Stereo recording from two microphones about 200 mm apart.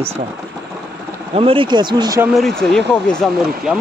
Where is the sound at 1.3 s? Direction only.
25° right (ahead or behind).